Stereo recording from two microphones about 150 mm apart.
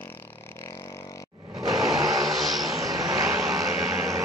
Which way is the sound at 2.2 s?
Centre (ahead or behind).